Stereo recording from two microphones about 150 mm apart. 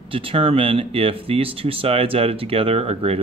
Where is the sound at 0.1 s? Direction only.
35° right (ahead or behind).